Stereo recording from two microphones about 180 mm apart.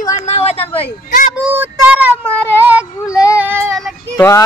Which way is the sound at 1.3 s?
10° right (ahead or behind).